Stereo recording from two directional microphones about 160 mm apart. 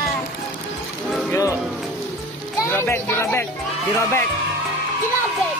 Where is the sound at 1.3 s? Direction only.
20° left (ahead or behind).